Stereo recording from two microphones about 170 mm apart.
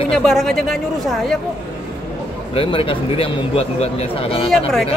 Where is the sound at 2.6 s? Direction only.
30° left (ahead or behind).